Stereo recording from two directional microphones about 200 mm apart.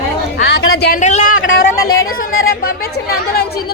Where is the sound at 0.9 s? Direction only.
35° left (ahead or behind).